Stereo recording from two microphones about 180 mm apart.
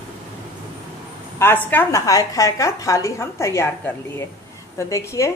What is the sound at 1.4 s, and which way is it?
Speech, 10° left (ahead or behind).